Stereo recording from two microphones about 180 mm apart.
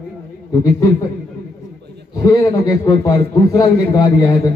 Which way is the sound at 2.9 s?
20° left (ahead or behind).